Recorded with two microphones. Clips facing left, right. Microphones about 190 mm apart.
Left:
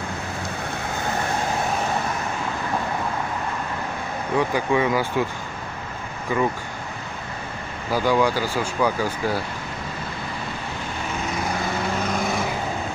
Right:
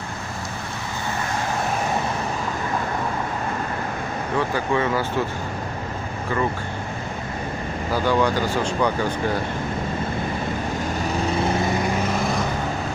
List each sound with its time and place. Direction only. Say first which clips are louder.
4.4 s speech: left 2 dB; 15° left (ahead or behind)
7.9 s speech: left 1 dB; 10° left (ahead or behind)
11.1 s vehicle: right 4 dB; 30° right (ahead or behind)
12.1 s vehicle: right 1 dB; centre (ahead or behind)